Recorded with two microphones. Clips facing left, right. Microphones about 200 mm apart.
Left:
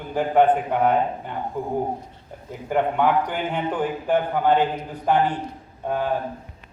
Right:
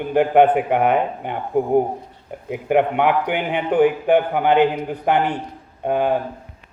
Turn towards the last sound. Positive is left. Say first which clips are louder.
# right 5 dB
turn(degrees=-70)  # may be behind; listen again after turning